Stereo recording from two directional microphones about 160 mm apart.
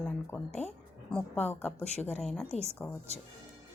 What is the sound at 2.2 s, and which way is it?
Speech, centre (ahead or behind).